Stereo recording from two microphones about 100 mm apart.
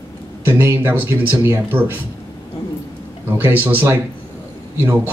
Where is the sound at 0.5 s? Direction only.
20° right (ahead or behind).